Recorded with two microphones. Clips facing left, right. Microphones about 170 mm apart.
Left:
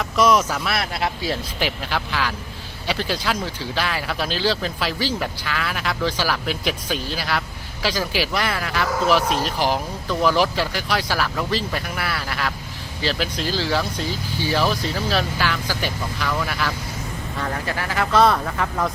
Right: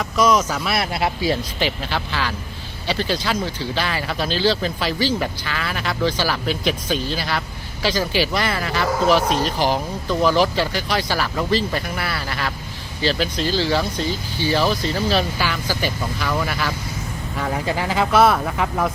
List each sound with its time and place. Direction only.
0.0 s speech: centre (ahead or behind)
17.7 s speech: 20° right (ahead or behind)
18.2 s speech: 5° right (ahead or behind)